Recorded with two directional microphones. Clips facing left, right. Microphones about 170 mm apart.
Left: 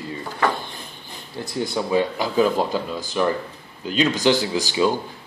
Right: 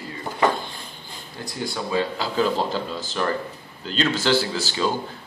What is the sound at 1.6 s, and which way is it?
A man's voice, 15° left (ahead or behind).